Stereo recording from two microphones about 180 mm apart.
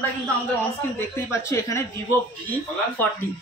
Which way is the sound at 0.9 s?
15° left (ahead or behind).